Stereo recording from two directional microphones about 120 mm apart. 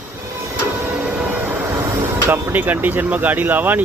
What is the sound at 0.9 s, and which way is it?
Vehicle, 15° right (ahead or behind).